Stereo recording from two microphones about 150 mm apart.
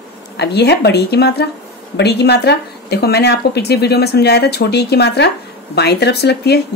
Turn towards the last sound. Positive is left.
turn(degrees=90)